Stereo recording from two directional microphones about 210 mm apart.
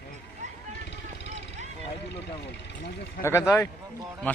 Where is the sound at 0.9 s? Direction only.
55° left (ahead or behind).